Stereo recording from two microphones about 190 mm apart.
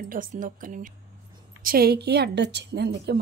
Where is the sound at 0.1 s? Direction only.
45° right (ahead or behind).